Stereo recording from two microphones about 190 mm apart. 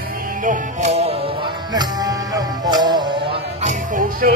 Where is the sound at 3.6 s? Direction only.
45° right (ahead or behind).